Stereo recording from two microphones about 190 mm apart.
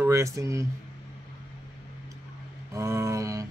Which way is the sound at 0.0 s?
15° right (ahead or behind).